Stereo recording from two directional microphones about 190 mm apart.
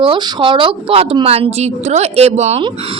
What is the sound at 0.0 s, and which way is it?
A woman's voice, 25° right (ahead or behind).